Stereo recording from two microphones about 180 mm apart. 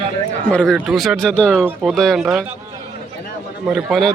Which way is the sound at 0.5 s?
Centre (ahead or behind).